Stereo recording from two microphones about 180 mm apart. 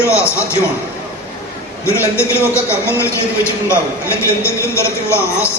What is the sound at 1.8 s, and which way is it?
A man's voice, 15° left (ahead or behind).